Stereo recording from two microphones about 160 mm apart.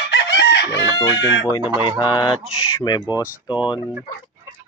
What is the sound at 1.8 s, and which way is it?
Speech, 30° left (ahead or behind).